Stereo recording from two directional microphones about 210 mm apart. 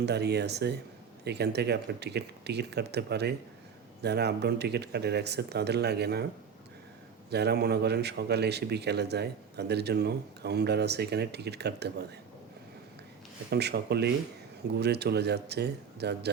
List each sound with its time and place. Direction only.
0.0 s a man's voice: 50° right (ahead or behind)
7.3 s a man's voice: 50° right (ahead or behind)
13.5 s a man's voice: 50° right (ahead or behind)